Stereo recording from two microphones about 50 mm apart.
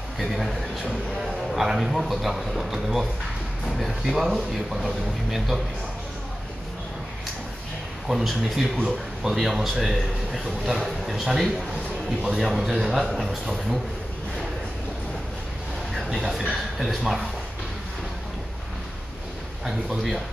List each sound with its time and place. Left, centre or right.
0.2 s a man's voice: centre
8.1 s a man's voice: centre
15.9 s a sound: centre
16.7 s a man's voice: centre
19.6 s a man's voice: centre